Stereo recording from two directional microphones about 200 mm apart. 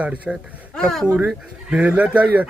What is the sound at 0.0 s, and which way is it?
Speech, 5° right (ahead or behind).